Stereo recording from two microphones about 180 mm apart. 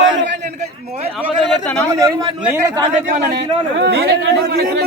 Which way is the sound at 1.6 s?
10° left (ahead or behind).